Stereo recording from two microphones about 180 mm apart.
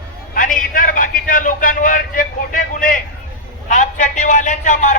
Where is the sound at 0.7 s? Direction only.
50° left (ahead or behind).